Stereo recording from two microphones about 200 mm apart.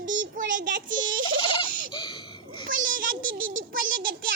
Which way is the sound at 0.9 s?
75° right (ahead or behind).